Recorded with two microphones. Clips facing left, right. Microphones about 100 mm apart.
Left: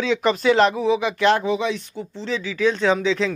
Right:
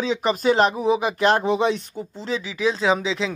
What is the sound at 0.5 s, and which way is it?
Speech, 15° right (ahead or behind).